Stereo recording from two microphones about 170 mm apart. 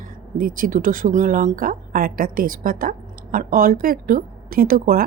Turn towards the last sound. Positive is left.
turn(degrees=-60)  # may be behind; listen again after turning